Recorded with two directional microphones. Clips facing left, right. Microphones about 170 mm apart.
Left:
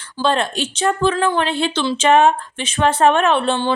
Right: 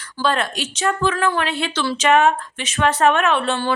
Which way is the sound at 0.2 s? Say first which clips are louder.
Left 3 dB; 25° left (ahead or behind).